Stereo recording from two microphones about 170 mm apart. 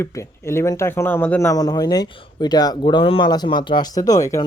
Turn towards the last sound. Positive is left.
turn(degrees=20)  # may be behind; listen again after turning